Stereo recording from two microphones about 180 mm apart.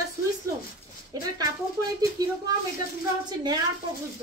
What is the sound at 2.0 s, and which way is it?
Speech, 20° right (ahead or behind).